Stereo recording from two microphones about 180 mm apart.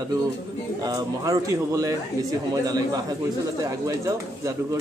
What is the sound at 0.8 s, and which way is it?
A man's voice, 20° right (ahead or behind).